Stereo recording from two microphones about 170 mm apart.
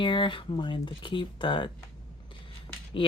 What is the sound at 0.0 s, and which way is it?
Speech, 30° left (ahead or behind).